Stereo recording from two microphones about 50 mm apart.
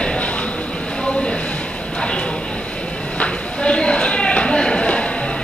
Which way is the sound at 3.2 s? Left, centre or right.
Centre.